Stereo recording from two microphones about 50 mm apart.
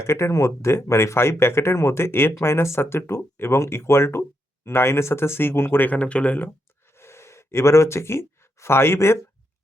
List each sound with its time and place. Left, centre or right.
0.0 s speech: left
5.8 s speech: left
6.9 s a sound: left